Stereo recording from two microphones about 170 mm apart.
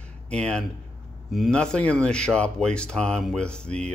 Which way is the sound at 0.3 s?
5° left (ahead or behind).